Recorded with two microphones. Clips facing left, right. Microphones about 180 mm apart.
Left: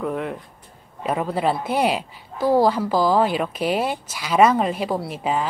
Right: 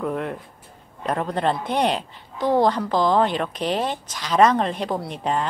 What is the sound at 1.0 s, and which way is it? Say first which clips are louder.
A woman's voice: left 1 dB; 5° left (ahead or behind).